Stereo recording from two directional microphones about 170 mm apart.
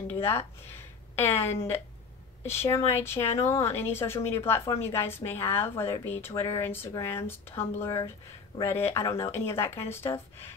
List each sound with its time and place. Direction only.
0.1 s a woman's voice: 15° left (ahead or behind)